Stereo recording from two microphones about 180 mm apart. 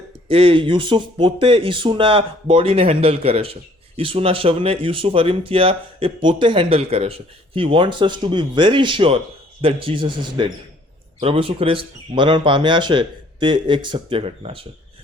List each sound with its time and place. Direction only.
0.3 s speech: 30° right (ahead or behind)